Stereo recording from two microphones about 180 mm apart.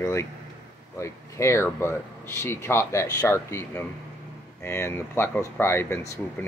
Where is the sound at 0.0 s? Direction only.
15° left (ahead or behind).